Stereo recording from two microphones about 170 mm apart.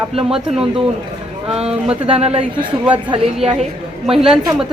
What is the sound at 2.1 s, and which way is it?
A woman's voice, 35° right (ahead or behind).